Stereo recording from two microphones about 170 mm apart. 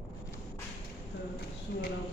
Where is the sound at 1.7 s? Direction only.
65° left (ahead or behind).